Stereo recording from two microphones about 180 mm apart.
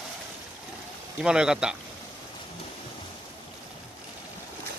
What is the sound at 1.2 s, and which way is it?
Speech, 5° right (ahead or behind).